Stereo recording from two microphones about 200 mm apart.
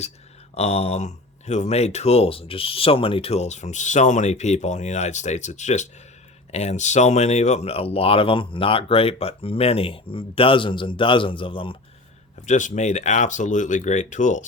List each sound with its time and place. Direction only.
0.5 s speech: 30° left (ahead or behind)
12.5 s speech: 40° left (ahead or behind)